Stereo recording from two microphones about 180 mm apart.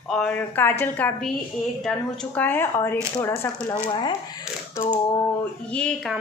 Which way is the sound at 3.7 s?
25° left (ahead or behind).